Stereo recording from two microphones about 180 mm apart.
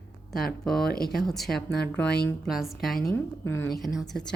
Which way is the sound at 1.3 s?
Centre (ahead or behind).